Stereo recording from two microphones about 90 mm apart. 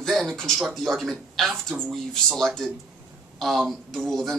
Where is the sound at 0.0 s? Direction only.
Centre (ahead or behind).